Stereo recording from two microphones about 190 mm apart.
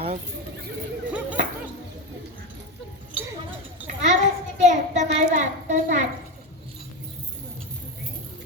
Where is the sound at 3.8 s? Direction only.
40° right (ahead or behind).